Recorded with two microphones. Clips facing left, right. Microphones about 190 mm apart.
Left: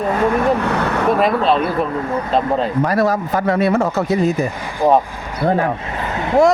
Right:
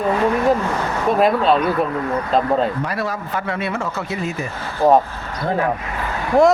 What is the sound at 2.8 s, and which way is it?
Speech, 40° left (ahead or behind).